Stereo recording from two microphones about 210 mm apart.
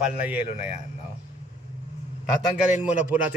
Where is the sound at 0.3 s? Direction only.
30° left (ahead or behind).